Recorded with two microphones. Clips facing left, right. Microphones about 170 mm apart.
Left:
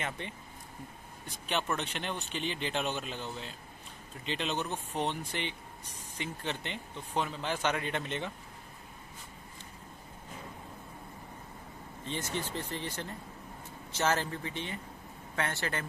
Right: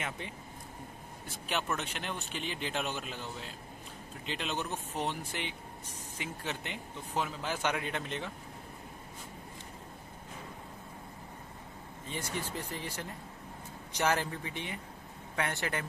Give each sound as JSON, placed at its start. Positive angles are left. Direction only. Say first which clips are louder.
{"t": 1.5, "sound": "speech", "louder": "left 2 dB", "side_deg": -5}
{"t": 12.1, "sound": "speech", "louder": "left 2 dB", "side_deg": -10}